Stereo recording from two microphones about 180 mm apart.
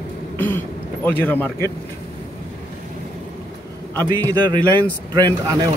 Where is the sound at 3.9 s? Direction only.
15° left (ahead or behind).